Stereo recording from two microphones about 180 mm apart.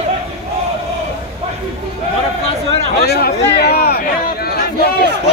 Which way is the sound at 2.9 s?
65° left (ahead or behind).